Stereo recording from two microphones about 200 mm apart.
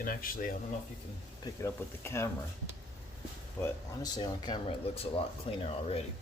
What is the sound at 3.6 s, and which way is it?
Speech, 20° left (ahead or behind).